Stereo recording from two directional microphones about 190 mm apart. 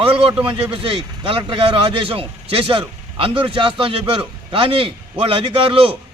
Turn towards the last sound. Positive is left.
turn(degrees=-30)  # may be behind; listen again after turning